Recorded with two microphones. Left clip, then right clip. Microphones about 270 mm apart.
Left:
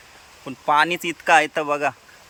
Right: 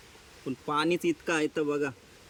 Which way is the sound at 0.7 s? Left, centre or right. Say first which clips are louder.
Left 9 dB; centre.